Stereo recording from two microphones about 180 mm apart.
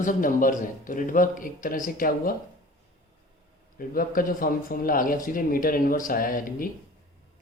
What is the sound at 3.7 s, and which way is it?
A man's voice, 50° left (ahead or behind).